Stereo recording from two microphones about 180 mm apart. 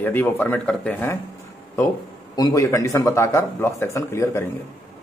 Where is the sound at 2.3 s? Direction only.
20° left (ahead or behind).